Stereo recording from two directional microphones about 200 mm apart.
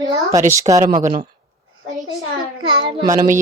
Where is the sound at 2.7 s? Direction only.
20° right (ahead or behind).